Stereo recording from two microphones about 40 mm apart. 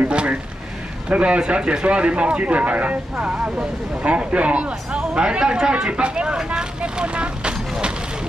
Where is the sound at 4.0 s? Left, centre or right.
Right.